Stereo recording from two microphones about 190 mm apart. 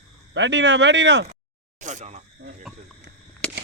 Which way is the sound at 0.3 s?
70° right (ahead or behind).